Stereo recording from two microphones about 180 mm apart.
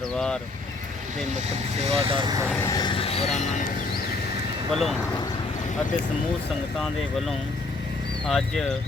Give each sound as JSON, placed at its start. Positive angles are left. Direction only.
{"t": 1.8, "sound": "speech", "side_deg": -35}
{"t": 2.5, "sound": "speech", "side_deg": 15}
{"t": 4.7, "sound": "speech", "side_deg": 0}
{"t": 8.3, "sound": "speech", "side_deg": 0}